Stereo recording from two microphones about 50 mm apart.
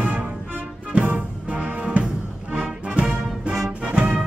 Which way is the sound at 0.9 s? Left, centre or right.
Right.